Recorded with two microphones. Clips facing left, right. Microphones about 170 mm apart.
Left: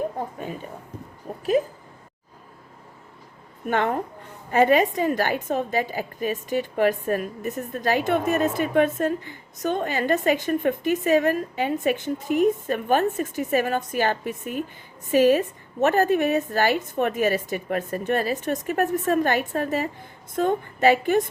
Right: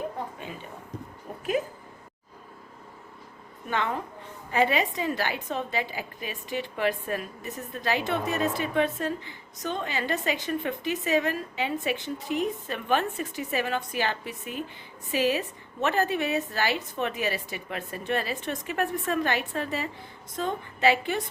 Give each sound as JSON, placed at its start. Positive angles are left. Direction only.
{"t": 3.7, "sound": "a woman's voice", "side_deg": 50}